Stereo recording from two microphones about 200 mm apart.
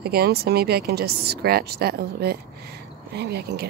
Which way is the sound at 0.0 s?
50° right (ahead or behind).